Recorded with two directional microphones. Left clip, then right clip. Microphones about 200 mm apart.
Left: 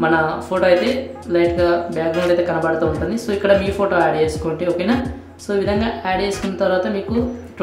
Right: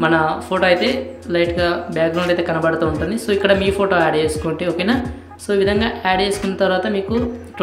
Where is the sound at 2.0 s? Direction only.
Centre (ahead or behind).